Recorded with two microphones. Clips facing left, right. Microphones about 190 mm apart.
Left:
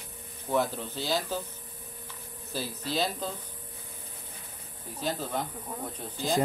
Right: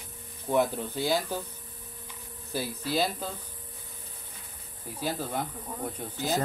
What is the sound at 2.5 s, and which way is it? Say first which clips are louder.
Speech: right 3 dB; 10° right (ahead or behind).